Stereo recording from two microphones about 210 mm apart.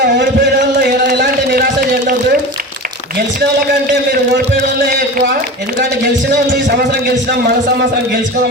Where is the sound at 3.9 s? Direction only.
50° right (ahead or behind).